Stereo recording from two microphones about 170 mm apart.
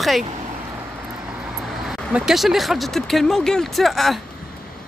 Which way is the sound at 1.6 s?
5° right (ahead or behind).